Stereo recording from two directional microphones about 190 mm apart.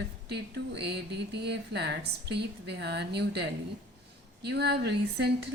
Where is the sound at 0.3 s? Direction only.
60° right (ahead or behind).